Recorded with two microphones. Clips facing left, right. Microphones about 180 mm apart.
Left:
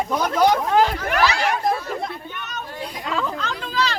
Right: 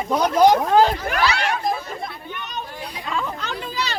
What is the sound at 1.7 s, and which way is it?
Chatter, 75° left (ahead or behind).